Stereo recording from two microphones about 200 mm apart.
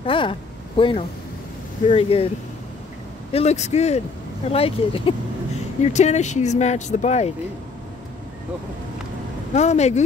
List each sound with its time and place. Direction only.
0.0 s a sound: 25° left (ahead or behind)
1.9 s speech: 30° left (ahead or behind)
3.3 s speech: 30° left (ahead or behind)
9.6 s speech: 35° left (ahead or behind)